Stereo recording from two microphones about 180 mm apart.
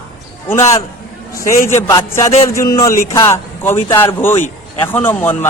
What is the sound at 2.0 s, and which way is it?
A man's voice, 15° left (ahead or behind).